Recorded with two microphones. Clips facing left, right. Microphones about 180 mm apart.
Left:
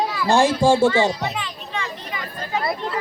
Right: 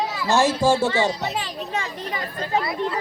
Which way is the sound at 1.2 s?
40° right (ahead or behind).